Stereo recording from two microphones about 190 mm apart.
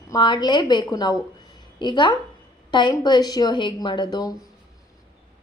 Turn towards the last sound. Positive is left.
turn(degrees=20)  # may be behind; listen again after turning